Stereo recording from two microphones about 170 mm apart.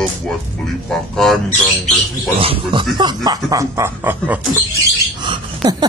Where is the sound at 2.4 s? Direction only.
30° right (ahead or behind); by 4.4 s 10° right (ahead or behind).